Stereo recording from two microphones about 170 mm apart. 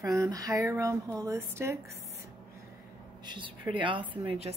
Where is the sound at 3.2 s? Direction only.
30° right (ahead or behind).